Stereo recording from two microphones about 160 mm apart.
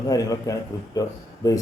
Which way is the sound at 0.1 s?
20° left (ahead or behind).